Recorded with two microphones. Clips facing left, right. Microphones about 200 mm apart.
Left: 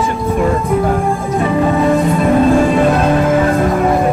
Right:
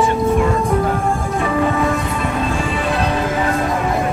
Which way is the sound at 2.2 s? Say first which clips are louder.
Left 10 dB; 50° left (ahead or behind).